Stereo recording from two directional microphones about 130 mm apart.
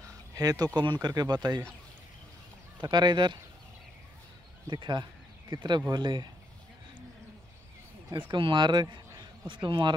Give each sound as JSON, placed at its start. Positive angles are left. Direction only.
{"t": 0.0, "sound": "a sound", "side_deg": -30}
{"t": 0.7, "sound": "speech", "side_deg": -35}
{"t": 2.8, "sound": "speech", "side_deg": -35}
{"t": 4.6, "sound": "speech", "side_deg": -35}
{"t": 8.3, "sound": "speech", "side_deg": -40}